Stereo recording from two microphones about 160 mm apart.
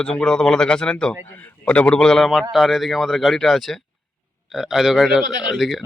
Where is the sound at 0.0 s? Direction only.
5° left (ahead or behind).